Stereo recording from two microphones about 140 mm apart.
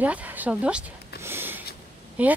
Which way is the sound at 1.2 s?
15° right (ahead or behind).